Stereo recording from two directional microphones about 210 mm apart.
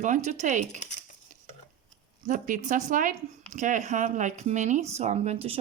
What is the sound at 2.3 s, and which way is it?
Speech, 40° right (ahead or behind).